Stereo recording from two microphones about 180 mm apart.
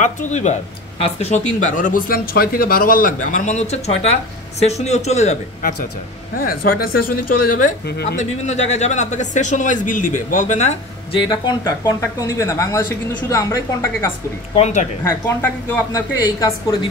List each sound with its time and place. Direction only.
0.0 s speech: 40° left (ahead or behind)
6.3 s speech: 55° left (ahead or behind)
8.2 s speech: 40° left (ahead or behind)
11.2 s speech: 25° left (ahead or behind)
14.5 s speech: 40° left (ahead or behind)
15.0 s a woman's voice: 15° left (ahead or behind)